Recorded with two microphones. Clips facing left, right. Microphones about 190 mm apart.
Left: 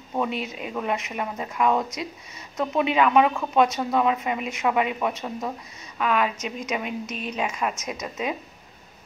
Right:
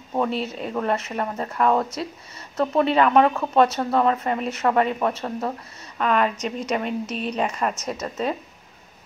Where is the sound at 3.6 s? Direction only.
15° left (ahead or behind).